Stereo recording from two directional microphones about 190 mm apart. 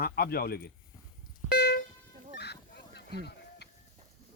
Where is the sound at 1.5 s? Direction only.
60° left (ahead or behind).